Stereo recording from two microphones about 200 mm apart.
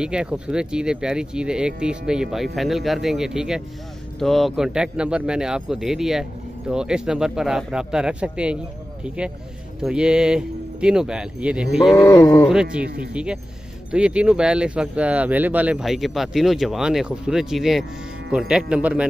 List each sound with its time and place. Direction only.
0.0 s speech: 5° right (ahead or behind)
11.9 s a sound: 15° left (ahead or behind)
12.4 s speech: 5° right (ahead or behind)
12.8 s speech: 50° right (ahead or behind)
13.1 s speech: 5° right (ahead or behind)